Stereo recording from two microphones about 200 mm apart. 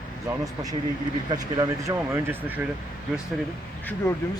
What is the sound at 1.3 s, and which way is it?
Speech, 15° right (ahead or behind).